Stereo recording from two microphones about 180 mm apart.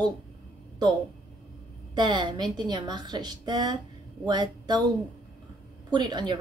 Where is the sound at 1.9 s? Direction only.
25° right (ahead or behind).